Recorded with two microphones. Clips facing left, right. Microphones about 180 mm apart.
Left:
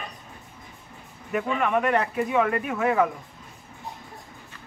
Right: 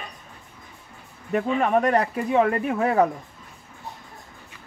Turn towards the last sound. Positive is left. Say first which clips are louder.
# right 2 dB
turn(degrees=-35)  # may be behind; listen again after turning